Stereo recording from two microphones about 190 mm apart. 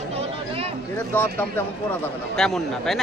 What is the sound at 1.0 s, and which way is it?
Speech, 10° left (ahead or behind).